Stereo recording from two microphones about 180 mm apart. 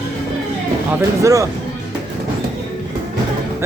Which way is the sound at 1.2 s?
15° right (ahead or behind).